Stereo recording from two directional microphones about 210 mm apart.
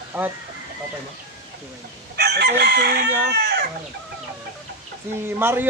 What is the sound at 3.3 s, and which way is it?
Speech, 55° right (ahead or behind).